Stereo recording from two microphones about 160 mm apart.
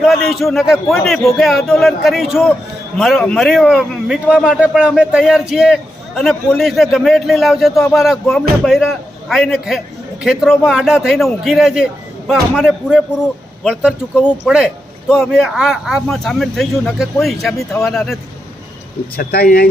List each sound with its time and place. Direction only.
0.0 s a man's voice: centre (ahead or behind)
19.1 s speech: 70° left (ahead or behind)